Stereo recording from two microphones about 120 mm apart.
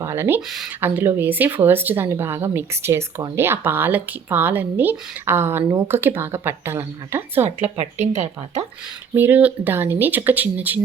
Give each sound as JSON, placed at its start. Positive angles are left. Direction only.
{"t": 0.0, "sound": "speech", "side_deg": -20}
{"t": 7.4, "sound": "speech", "side_deg": -65}
{"t": 9.1, "sound": "speech", "side_deg": -15}